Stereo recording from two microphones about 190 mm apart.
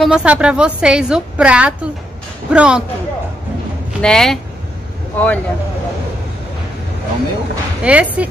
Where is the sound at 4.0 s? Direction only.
5° left (ahead or behind).